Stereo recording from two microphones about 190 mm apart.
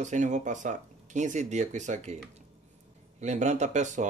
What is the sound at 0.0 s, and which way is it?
Speech, 40° right (ahead or behind).